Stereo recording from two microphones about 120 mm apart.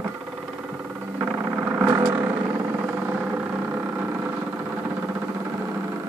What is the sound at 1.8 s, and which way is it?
Vehicle, 25° right (ahead or behind).